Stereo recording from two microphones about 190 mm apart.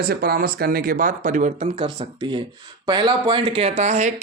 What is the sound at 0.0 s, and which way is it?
Speech, 55° right (ahead or behind).